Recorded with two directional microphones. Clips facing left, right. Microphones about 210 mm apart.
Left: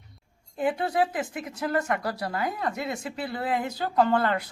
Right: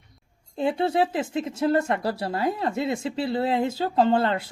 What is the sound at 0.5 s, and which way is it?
Speech, 25° right (ahead or behind).